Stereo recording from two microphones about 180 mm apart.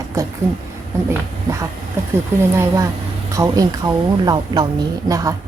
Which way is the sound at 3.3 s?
20° right (ahead or behind).